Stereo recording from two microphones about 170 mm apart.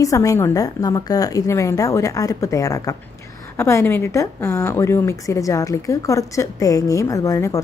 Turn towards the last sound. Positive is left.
turn(degrees=20)  # may be behind; listen again after turning